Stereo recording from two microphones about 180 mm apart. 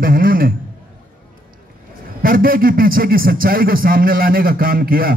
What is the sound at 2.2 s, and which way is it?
Speech, 55° right (ahead or behind).